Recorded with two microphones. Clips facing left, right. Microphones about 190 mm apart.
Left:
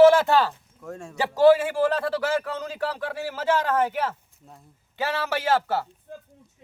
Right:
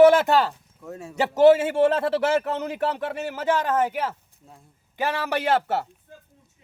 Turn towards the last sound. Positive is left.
turn(degrees=-20)  # may be behind; listen again after turning